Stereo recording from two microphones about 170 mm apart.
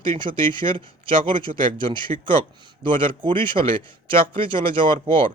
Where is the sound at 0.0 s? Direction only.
30° right (ahead or behind).